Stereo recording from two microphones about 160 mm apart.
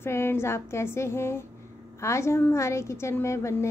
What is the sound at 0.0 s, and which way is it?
A woman's voice, 15° left (ahead or behind).